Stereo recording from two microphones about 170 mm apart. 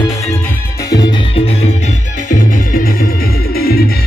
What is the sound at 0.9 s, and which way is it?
Music, 35° left (ahead or behind).